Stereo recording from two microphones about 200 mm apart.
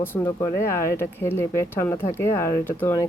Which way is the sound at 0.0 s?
10° left (ahead or behind).